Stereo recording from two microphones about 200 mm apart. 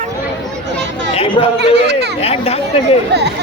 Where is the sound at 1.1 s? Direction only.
30° left (ahead or behind).